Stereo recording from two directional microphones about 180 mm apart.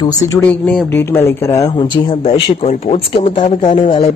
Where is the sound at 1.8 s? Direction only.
30° left (ahead or behind).